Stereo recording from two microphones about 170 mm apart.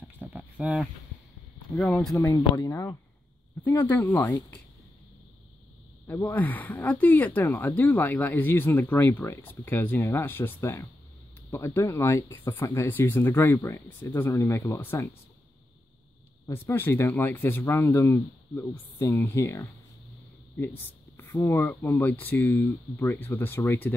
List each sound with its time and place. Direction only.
0.2 s livestock: 10° right (ahead or behind)
2.1 s speech: 20° left (ahead or behind)
6.0 s speech: 10° left (ahead or behind)
16.4 s speech: 15° left (ahead or behind)
21.2 s speech: 15° left (ahead or behind)